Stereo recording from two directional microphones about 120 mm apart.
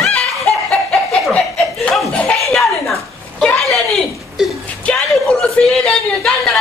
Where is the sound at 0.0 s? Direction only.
5° left (ahead or behind).